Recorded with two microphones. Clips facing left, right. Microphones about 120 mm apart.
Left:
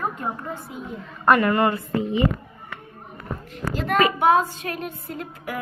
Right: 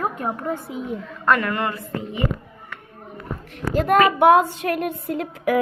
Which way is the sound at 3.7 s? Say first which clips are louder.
Right 4 dB; 50° right (ahead or behind).